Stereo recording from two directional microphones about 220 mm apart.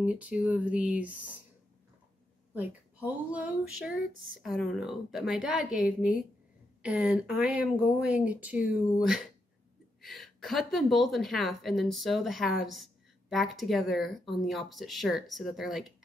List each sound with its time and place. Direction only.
0.0 s speech: 5° right (ahead or behind)
3.3 s speech: 5° right (ahead or behind)